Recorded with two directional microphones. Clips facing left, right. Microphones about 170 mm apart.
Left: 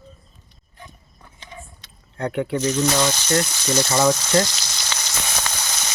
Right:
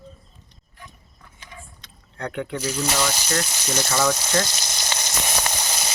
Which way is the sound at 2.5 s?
10° right (ahead or behind).